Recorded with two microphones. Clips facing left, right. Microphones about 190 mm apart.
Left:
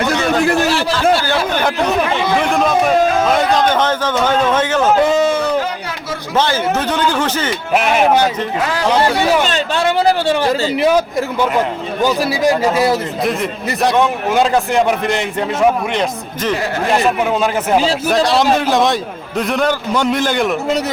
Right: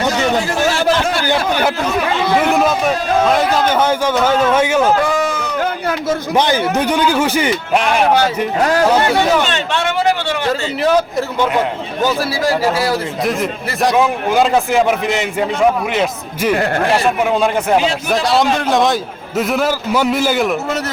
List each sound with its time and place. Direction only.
2.5 s a man's voice: 5° right (ahead or behind)
4.9 s speech: 25° left (ahead or behind)
6.3 s a man's voice: 15° right (ahead or behind)
7.7 s a man's voice: 5° left (ahead or behind)
8.6 s speech: 45° right (ahead or behind)
9.5 s speech: 35° left (ahead or behind)
10.8 s speech: 10° left (ahead or behind)
12.0 s speech: 15° left (ahead or behind)
13.8 s a man's voice: centre (ahead or behind)